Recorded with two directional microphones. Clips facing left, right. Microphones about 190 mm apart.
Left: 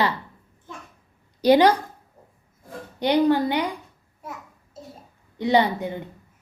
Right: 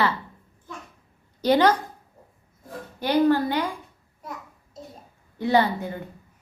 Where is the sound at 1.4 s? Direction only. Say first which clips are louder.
Left 3 dB; 15° left (ahead or behind).